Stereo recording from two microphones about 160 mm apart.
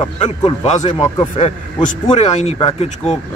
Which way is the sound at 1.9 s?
45° left (ahead or behind).